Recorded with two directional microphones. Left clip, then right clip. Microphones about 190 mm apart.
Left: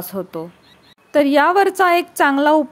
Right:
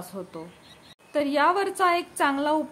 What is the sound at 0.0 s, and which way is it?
A woman's voice, 35° left (ahead or behind).